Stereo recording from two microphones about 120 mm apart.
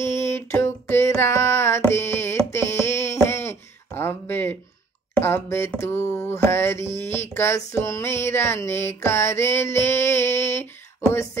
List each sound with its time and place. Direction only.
0.2 s music: 20° left (ahead or behind)
5.1 s speech: 20° left (ahead or behind)
5.8 s a sound: 20° left (ahead or behind)